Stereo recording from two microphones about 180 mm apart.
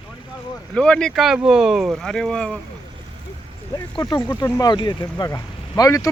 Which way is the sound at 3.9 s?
25° left (ahead or behind).